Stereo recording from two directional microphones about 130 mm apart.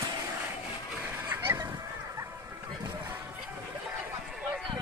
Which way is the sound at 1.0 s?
15° right (ahead or behind).